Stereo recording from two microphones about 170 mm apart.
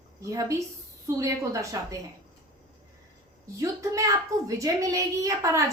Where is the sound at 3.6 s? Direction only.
20° right (ahead or behind).